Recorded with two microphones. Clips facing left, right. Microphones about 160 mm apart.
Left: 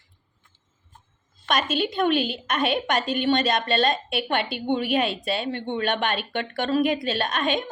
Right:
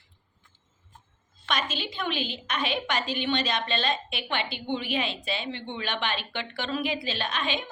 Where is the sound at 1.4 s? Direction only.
50° left (ahead or behind).